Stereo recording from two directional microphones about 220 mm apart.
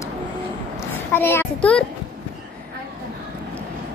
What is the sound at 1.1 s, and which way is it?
Speech, 10° left (ahead or behind).